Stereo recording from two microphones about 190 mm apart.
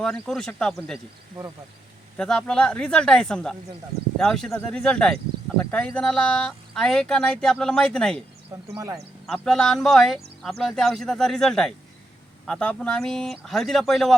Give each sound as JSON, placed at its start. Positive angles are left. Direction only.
{"t": 0.0, "sound": "speech", "side_deg": 5}
{"t": 2.1, "sound": "speech", "side_deg": 5}
{"t": 8.6, "sound": "speech", "side_deg": -15}
{"t": 9.2, "sound": "speech", "side_deg": 5}